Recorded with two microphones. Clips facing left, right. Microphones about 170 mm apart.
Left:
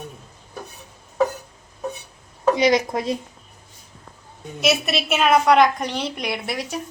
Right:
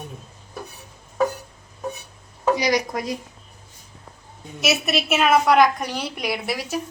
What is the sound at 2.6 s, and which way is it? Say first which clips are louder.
Speech: left 4 dB; 25° left (ahead or behind).